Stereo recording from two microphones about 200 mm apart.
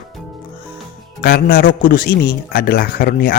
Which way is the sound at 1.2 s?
50° left (ahead or behind).